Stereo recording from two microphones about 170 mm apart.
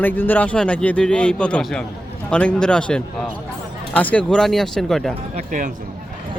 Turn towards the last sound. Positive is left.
turn(degrees=-50)  # may be behind; listen again after turning